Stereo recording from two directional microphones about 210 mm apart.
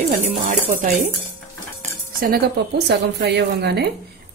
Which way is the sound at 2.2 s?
50° right (ahead or behind).